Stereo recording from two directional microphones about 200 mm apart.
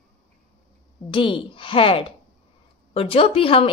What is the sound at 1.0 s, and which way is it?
A woman's voice, 25° left (ahead or behind).